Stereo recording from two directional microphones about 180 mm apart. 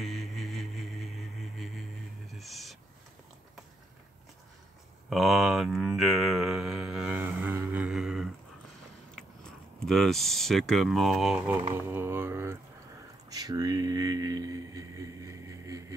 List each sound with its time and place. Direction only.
0.0 s music: centre (ahead or behind)
5.1 s mantra: centre (ahead or behind)
9.1 s speech: 5° left (ahead or behind)
11.9 s mantra: 10° right (ahead or behind)
13.3 s a sound: 20° right (ahead or behind)